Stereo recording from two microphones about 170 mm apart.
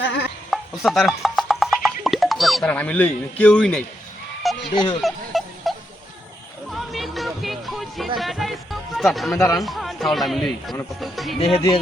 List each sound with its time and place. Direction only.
0.0 s a sound: 90° left
0.5 s music: centre (ahead or behind)
4.7 s speech: 25° left (ahead or behind)
4.9 s a sound: centre (ahead or behind)
6.7 s music: centre (ahead or behind)
9.3 s speech: 20° left (ahead or behind)
9.6 s speech: centre (ahead or behind)